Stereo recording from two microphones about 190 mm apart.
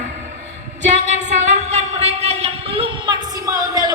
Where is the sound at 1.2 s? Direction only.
35° right (ahead or behind).